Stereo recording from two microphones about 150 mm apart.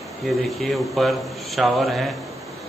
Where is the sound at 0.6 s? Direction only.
Centre (ahead or behind).